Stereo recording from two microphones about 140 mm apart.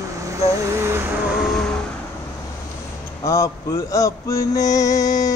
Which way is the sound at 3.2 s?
20° left (ahead or behind).